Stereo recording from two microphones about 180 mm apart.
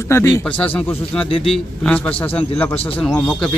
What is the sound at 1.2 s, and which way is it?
Speech, 30° left (ahead or behind).